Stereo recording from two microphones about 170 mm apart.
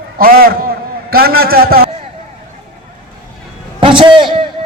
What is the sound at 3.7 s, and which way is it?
Speech, 30° right (ahead or behind).